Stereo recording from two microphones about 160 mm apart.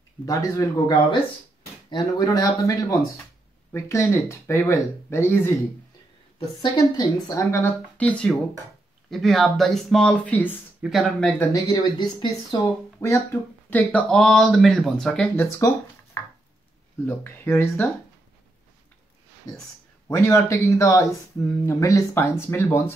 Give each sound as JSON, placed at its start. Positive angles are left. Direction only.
{"t": 0.2, "sound": "speech", "side_deg": 20}
{"t": 2.1, "sound": "speech", "side_deg": 25}
{"t": 6.6, "sound": "speech", "side_deg": 25}
{"t": 11.5, "sound": "speech", "side_deg": 20}
{"t": 13.0, "sound": "speech", "side_deg": 15}
{"t": 17.0, "sound": "speech", "side_deg": 15}
{"t": 20.1, "sound": "speech", "side_deg": 20}